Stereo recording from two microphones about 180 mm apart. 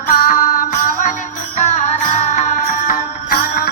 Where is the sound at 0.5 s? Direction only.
50° left (ahead or behind).